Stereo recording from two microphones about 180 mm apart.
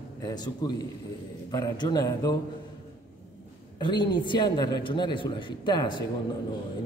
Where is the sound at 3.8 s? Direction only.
25° left (ahead or behind).